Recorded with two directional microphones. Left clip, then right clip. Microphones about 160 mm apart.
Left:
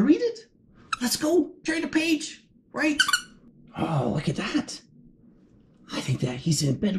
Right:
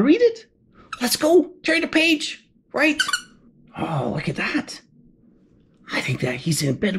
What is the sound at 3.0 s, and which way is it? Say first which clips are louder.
Speech: even; centre (ahead or behind).